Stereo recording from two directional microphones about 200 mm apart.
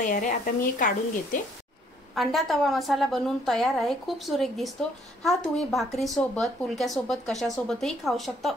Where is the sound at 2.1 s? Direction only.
Centre (ahead or behind).